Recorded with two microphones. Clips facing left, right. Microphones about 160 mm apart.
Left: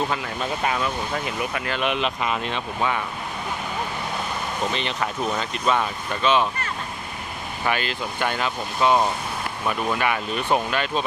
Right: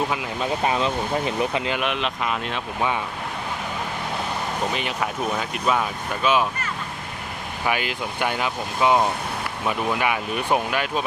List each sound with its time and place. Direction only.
0.1 s speech: 10° right (ahead or behind)
0.6 s speech: 25° right (ahead or behind)
1.8 s speech: centre (ahead or behind)
4.7 s speech: 5° right (ahead or behind)
7.6 s speech: 10° right (ahead or behind)